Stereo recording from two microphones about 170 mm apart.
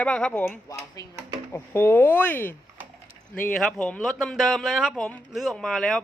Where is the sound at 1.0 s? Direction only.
20° left (ahead or behind).